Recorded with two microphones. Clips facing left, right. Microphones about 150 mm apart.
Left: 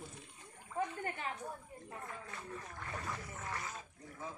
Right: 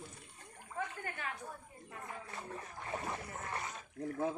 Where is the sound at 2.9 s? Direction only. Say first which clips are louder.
Right 4 dB; 25° right (ahead or behind).